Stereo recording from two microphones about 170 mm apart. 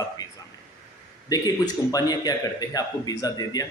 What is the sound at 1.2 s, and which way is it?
A man's voice, 20° left (ahead or behind).